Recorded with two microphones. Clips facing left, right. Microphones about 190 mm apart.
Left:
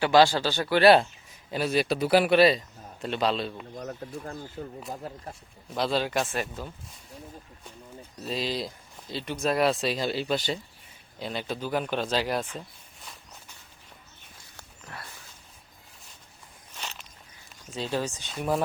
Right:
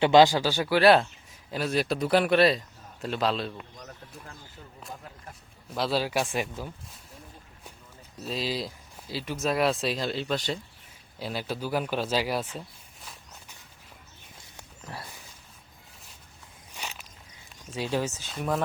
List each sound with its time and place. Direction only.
0.0 s speech: 20° right (ahead or behind)
0.8 s speech: centre (ahead or behind)
3.8 s speech: 40° left (ahead or behind)
5.7 s speech: 5° right (ahead or behind)
8.2 s speech: centre (ahead or behind)
16.7 s walk: 10° right (ahead or behind)
17.7 s speech: 10° right (ahead or behind)